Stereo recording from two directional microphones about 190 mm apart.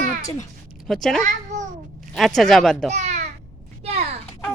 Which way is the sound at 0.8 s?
Centre (ahead or behind).